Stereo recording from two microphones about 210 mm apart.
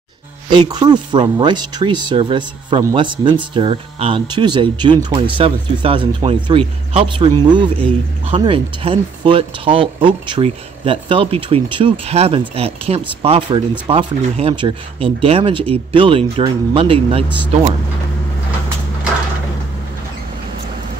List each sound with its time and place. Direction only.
0.5 s speech: 20° right (ahead or behind)